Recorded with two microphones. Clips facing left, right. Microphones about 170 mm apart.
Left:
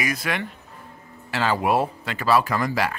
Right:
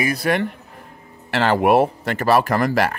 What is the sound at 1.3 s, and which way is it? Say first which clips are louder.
Speech: right 6 dB; 65° right (ahead or behind).